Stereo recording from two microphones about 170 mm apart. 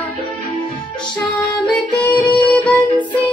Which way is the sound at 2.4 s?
10° left (ahead or behind).